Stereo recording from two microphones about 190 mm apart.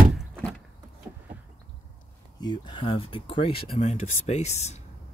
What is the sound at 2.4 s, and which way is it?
Speech, 25° left (ahead or behind).